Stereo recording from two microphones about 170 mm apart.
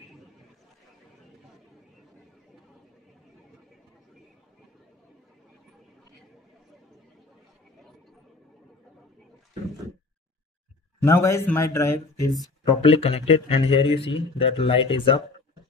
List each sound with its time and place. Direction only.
11.0 s speech: 15° left (ahead or behind)
12.6 s speech: 35° left (ahead or behind)